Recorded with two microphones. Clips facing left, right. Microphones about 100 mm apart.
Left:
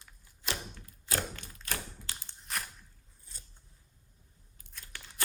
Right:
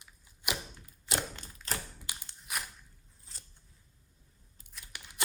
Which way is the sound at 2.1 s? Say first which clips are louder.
Even; 15° right (ahead or behind).